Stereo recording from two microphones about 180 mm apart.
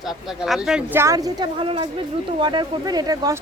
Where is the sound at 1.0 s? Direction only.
20° right (ahead or behind).